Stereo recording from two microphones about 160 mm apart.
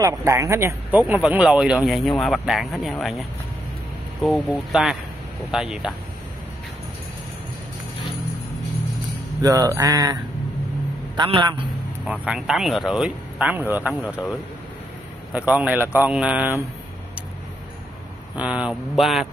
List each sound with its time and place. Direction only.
0.0 s speech: 20° right (ahead or behind)
9.4 s speech: 20° right (ahead or behind)
11.1 s a man's voice: 30° right (ahead or behind)
12.1 s speech: 5° right (ahead or behind)
15.3 s speech: 10° right (ahead or behind)
18.3 s speech: 5° right (ahead or behind)